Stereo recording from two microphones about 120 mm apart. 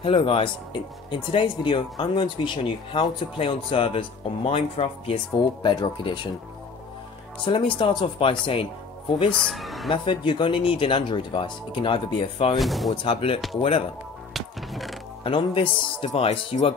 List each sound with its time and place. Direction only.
0.0 s speech: 50° left (ahead or behind)
7.4 s speech: 45° left (ahead or behind)
9.3 s speech: 5° left (ahead or behind)
9.8 s speech: 40° left (ahead or behind)
12.5 s speech: centre (ahead or behind)
12.9 s speech: 50° left (ahead or behind)
14.3 s music: centre (ahead or behind)
15.2 s speech: 45° left (ahead or behind)